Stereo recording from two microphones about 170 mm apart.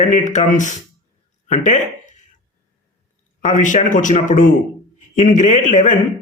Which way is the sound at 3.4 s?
45° left (ahead or behind).